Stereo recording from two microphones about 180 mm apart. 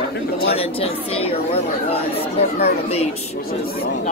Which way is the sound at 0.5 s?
35° left (ahead or behind).